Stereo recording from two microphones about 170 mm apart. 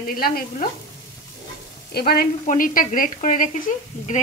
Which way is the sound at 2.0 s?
65° left (ahead or behind).